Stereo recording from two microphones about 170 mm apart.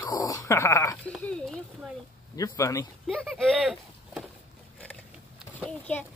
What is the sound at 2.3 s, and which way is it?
Speech, 20° left (ahead or behind).